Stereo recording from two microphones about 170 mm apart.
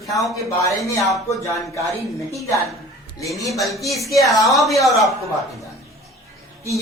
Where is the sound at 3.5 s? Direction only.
Centre (ahead or behind).